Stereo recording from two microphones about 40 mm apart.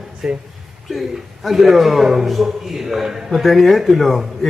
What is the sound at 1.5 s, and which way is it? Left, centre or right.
A man's voice, centre.